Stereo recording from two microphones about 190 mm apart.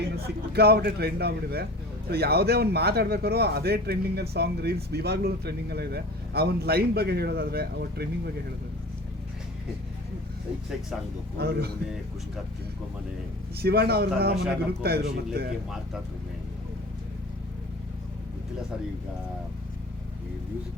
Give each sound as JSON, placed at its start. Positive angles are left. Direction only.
{"t": 0.5, "sound": "speech", "side_deg": -55}
{"t": 11.3, "sound": "speech", "side_deg": -55}
{"t": 13.6, "sound": "speech", "side_deg": -55}